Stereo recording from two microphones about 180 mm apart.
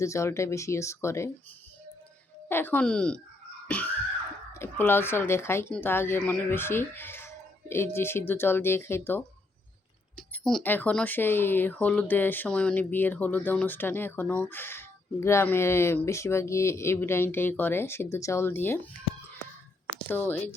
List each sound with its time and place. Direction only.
0.0 s speech: 15° left (ahead or behind)
2.5 s speech: 10° left (ahead or behind)
4.5 s speech: 15° left (ahead or behind)
20.1 s speech: 10° left (ahead or behind)